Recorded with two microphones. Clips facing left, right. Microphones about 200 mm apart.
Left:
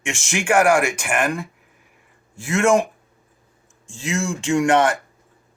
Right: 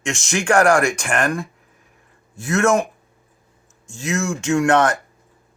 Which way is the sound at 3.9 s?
15° left (ahead or behind).